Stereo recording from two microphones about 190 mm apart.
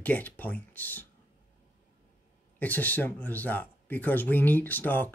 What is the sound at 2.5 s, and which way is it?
Speech, 10° left (ahead or behind).